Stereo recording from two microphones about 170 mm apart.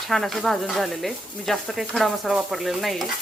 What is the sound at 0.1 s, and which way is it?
Speech, centre (ahead or behind).